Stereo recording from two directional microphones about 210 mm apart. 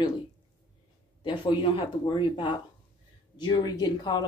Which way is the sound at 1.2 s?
25° left (ahead or behind).